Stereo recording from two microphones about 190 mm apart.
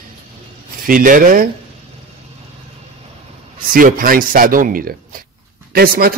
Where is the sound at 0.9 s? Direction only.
45° right (ahead or behind).